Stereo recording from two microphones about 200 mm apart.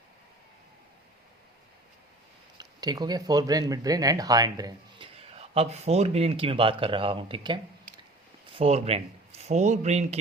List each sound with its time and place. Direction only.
2.6 s speech: 20° right (ahead or behind)
5.3 s speech: 30° right (ahead or behind)